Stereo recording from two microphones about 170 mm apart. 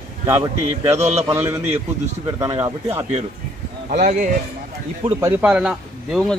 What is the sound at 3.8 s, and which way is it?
Speech, 50° right (ahead or behind).